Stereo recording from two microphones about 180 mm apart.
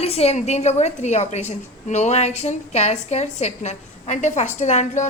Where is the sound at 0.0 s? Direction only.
35° left (ahead or behind).